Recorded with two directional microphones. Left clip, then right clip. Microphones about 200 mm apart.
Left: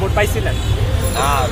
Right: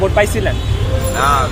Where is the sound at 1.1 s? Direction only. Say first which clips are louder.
Right 4 dB; 5° right (ahead or behind).